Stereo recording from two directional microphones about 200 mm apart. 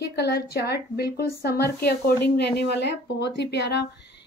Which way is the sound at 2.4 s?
55° left (ahead or behind).